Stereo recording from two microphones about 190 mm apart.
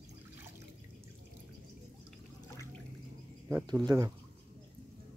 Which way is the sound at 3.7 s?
20° right (ahead or behind).